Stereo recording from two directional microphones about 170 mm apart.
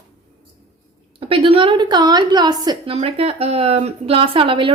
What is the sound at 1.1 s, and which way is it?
Speech, 30° right (ahead or behind).